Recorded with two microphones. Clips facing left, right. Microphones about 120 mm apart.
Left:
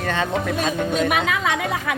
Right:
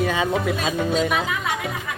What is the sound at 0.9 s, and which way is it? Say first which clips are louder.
Speech: left 1 dB; 65° left (ahead or behind).